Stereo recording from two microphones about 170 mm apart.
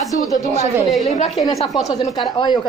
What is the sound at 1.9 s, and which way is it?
Speech, 25° left (ahead or behind).